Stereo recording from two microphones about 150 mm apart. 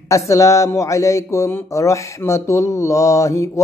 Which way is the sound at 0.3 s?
20° left (ahead or behind).